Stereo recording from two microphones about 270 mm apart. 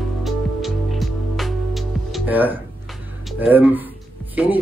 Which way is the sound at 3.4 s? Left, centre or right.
Centre.